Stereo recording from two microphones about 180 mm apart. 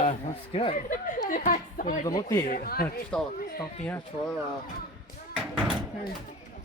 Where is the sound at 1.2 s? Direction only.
50° left (ahead or behind).